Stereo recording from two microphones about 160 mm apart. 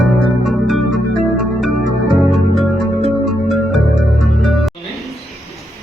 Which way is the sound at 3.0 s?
Centre (ahead or behind).